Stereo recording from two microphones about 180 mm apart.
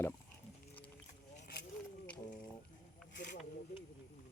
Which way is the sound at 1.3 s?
40° left (ahead or behind).